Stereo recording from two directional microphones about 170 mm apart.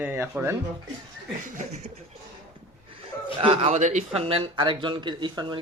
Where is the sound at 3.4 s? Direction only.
35° right (ahead or behind).